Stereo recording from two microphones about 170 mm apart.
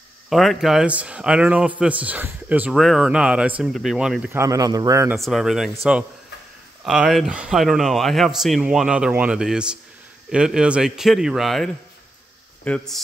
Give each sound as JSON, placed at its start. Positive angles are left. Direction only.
{"t": 0.3, "sound": "a man's voice", "side_deg": 0}
{"t": 4.4, "sound": "speech", "side_deg": -20}
{"t": 5.1, "sound": "speech", "side_deg": 0}
{"t": 6.8, "sound": "speech", "side_deg": -5}